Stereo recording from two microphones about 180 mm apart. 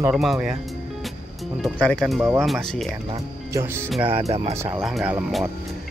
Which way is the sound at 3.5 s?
15° right (ahead or behind).